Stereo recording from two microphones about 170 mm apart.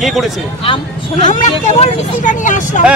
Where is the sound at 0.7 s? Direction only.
40° left (ahead or behind).